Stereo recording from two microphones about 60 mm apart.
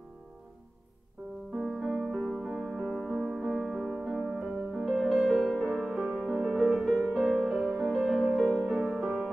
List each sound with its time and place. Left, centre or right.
1.6 s music: centre